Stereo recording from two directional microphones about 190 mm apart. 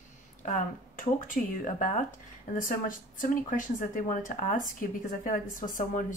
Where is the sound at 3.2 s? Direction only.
45° left (ahead or behind).